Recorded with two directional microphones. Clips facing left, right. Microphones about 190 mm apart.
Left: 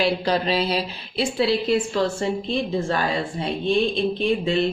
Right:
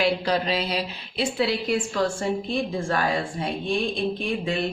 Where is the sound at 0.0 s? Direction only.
30° left (ahead or behind).